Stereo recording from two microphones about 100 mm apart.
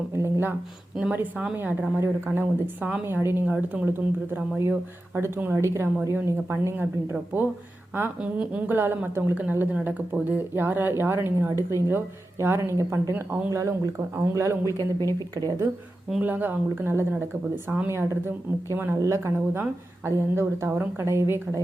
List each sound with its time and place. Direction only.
0.1 s a woman's voice: 25° right (ahead or behind)
14.7 s speech: 30° left (ahead or behind)
15.4 s speech: 35° right (ahead or behind)
16.2 s a woman's voice: 20° right (ahead or behind)